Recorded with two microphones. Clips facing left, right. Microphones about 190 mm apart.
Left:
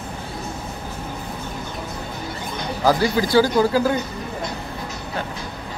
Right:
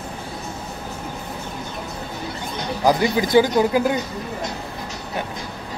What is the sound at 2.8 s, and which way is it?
A man's voice, 20° right (ahead or behind).